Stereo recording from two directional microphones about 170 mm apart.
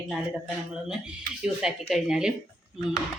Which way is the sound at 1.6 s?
5° right (ahead or behind).